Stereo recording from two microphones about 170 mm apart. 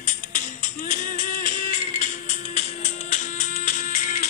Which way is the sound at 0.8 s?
45° left (ahead or behind).